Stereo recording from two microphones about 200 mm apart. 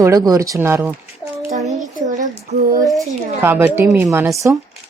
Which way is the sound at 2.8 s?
Centre (ahead or behind).